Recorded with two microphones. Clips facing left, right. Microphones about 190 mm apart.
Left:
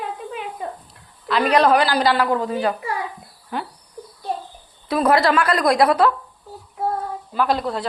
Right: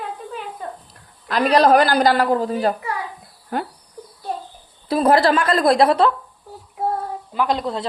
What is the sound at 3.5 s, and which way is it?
Speech, 45° right (ahead or behind).